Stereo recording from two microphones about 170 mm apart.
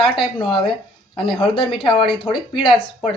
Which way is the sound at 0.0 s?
30° left (ahead or behind).